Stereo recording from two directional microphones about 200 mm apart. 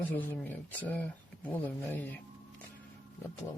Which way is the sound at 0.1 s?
10° left (ahead or behind).